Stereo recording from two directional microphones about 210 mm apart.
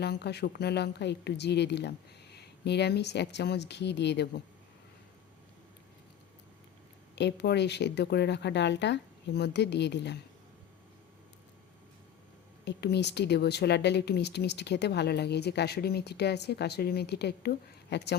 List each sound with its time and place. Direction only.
0.0 s speech: 50° left (ahead or behind)
7.2 s speech: 55° left (ahead or behind)
12.6 s speech: 55° left (ahead or behind)